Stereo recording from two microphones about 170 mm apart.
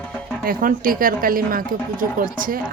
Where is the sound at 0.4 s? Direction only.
55° right (ahead or behind).